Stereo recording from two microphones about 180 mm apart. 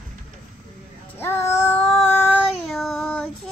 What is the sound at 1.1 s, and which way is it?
Child singing, 15° left (ahead or behind).